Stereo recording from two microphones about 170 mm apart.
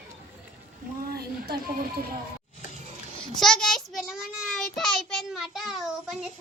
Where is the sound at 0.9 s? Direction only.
60° right (ahead or behind).